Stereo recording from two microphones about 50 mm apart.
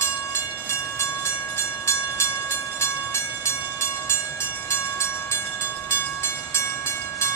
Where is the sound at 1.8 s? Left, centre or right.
Left.